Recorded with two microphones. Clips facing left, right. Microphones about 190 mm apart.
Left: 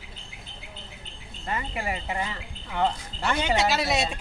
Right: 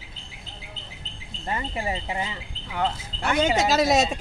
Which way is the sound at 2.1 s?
15° right (ahead or behind).